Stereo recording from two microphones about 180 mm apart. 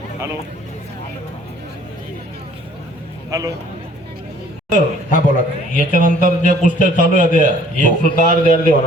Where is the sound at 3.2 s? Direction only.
20° right (ahead or behind).